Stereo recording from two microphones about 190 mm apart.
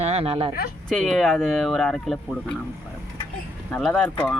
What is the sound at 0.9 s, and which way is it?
Speech, centre (ahead or behind).